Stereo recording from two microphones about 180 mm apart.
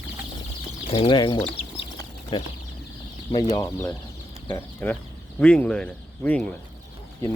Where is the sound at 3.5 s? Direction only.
20° left (ahead or behind).